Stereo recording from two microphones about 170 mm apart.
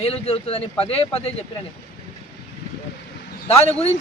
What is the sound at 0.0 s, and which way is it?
Speech, 35° left (ahead or behind).